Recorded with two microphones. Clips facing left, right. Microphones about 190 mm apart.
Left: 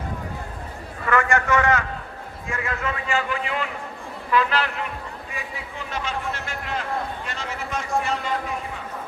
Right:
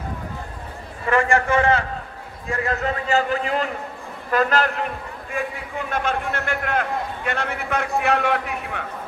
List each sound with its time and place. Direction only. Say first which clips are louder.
1.0 s a man's voice: right 2 dB; 30° right (ahead or behind); by 8.8 s 65° right (ahead or behind)